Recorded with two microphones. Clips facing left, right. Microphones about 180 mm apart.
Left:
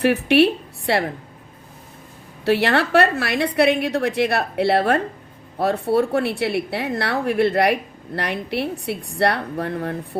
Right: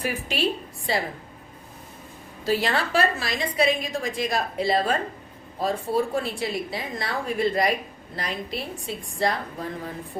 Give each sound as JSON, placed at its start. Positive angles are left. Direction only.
{"t": 0.0, "sound": "a woman's voice", "side_deg": 70}
{"t": 2.4, "sound": "a woman's voice", "side_deg": 70}